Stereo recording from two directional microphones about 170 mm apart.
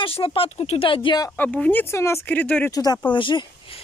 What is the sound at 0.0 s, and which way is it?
Speech, 30° left (ahead or behind).